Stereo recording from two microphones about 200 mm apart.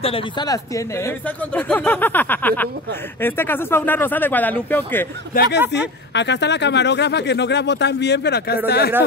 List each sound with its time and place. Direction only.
0.0 s speech: 25° left (ahead or behind); by 5.0 s 10° left (ahead or behind)
5.3 s speech: 50° left (ahead or behind)